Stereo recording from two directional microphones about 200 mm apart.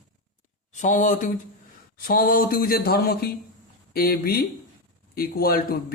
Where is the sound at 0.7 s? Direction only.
40° left (ahead or behind).